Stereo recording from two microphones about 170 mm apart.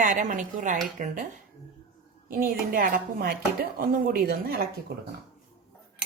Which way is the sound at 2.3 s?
55° right (ahead or behind).